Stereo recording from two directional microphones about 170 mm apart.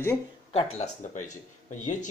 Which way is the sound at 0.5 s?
40° left (ahead or behind).